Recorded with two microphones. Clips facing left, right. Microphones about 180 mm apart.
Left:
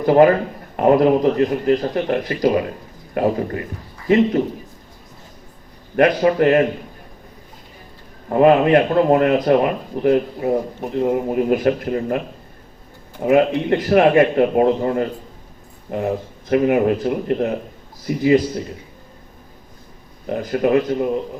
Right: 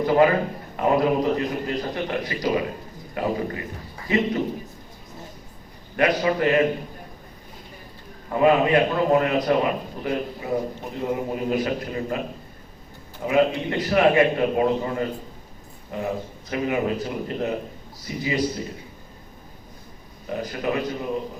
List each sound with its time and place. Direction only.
0.0 s a man's voice: 50° left (ahead or behind)
6.0 s a man's voice: 55° left (ahead or behind)
8.3 s a man's voice: 55° left (ahead or behind)
13.2 s a man's voice: 55° left (ahead or behind)
20.2 s a man's voice: 55° left (ahead or behind)